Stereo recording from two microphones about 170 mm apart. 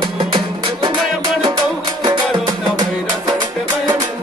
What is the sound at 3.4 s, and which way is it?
Music, 25° right (ahead or behind).